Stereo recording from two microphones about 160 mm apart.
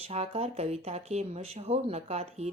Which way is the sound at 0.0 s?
40° right (ahead or behind).